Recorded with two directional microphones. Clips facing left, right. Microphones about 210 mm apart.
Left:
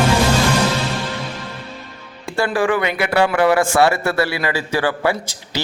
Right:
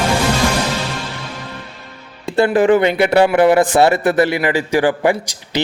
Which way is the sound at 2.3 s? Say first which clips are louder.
Right 6 dB; 20° right (ahead or behind).